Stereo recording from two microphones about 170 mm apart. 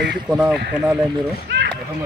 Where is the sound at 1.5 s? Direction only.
90° right.